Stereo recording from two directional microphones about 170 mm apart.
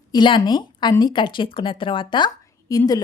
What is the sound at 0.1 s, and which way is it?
Speech, 25° left (ahead or behind).